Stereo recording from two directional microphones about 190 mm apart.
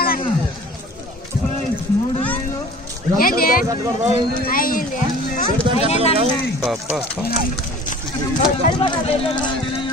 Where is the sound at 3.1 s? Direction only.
50° left (ahead or behind).